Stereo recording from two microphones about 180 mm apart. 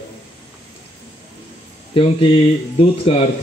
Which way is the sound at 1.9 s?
30° left (ahead or behind).